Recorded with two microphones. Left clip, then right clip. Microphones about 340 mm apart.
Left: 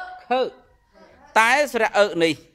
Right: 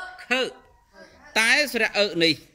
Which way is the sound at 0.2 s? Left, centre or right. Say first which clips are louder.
Left 3 dB; centre.